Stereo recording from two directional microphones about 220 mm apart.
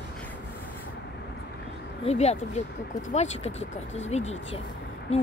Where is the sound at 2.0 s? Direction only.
30° left (ahead or behind).